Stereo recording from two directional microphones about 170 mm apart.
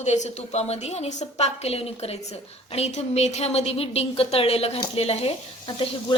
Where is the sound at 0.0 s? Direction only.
40° left (ahead or behind).